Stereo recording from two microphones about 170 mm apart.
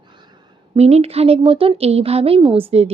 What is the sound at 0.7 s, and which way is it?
A woman's voice, 35° right (ahead or behind).